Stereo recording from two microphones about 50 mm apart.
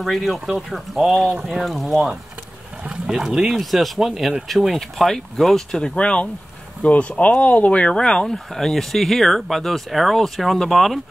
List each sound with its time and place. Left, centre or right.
0.0 s speech: centre
3.1 s speech: centre
4.5 s speech: centre